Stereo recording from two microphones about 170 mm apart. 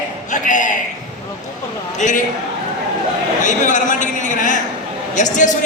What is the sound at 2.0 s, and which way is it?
Speech, 45° left (ahead or behind).